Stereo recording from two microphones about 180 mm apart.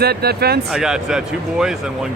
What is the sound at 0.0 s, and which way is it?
Speech, 60° right (ahead or behind).